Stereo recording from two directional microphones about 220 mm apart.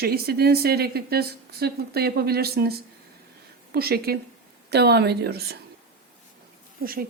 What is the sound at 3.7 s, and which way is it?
Speech, 45° right (ahead or behind).